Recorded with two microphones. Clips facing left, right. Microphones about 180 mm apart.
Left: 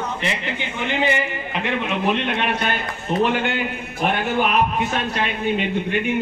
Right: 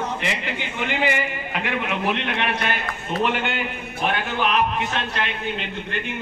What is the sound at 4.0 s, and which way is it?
Speech, 50° left (ahead or behind).